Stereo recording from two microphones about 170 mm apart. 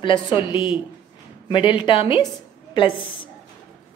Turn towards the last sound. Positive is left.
turn(degrees=30)  # may be behind; listen again after turning